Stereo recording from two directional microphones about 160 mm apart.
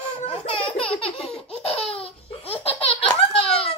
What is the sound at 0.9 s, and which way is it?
Laughter, 35° left (ahead or behind).